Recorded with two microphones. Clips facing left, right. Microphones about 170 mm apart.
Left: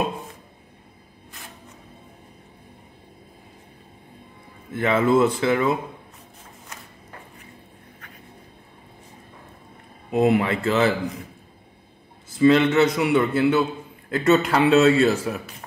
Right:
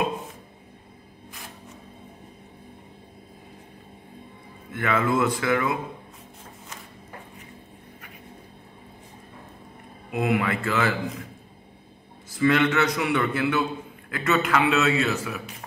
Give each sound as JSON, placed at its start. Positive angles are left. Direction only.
{"t": 4.7, "sound": "a man's voice", "side_deg": 25}
{"t": 10.1, "sound": "a man's voice", "side_deg": 30}
{"t": 12.4, "sound": "a man's voice", "side_deg": 25}